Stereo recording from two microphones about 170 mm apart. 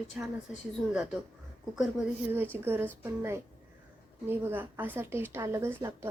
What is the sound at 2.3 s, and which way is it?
A woman's voice, 15° right (ahead or behind).